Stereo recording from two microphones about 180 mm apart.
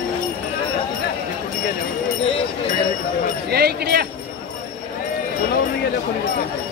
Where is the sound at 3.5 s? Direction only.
65° right (ahead or behind).